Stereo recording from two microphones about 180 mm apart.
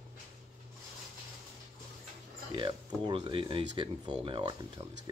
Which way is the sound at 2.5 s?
25° right (ahead or behind).